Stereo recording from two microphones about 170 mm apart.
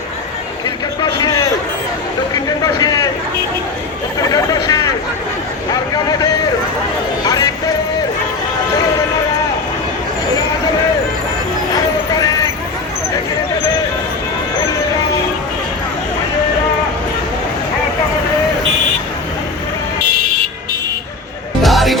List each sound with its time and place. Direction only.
1.0 s a sound: 20° left (ahead or behind)
4.2 s chatter: 20° left (ahead or behind)
5.9 s vehicle: 20° left (ahead or behind)
7.3 s music: 20° left (ahead or behind)
21.6 s music: centre (ahead or behind)